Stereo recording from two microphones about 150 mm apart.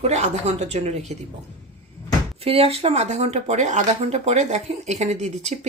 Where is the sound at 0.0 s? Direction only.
50° right (ahead or behind).